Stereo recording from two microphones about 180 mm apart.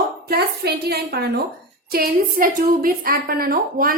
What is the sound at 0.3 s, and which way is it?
A woman's voice, 60° right (ahead or behind).